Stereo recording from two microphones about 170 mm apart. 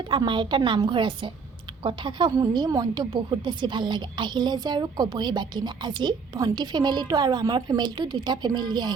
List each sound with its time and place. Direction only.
0.0 s a woman's voice: 25° right (ahead or behind)